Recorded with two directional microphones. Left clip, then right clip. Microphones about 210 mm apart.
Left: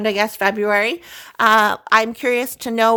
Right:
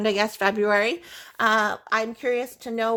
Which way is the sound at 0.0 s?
10° left (ahead or behind).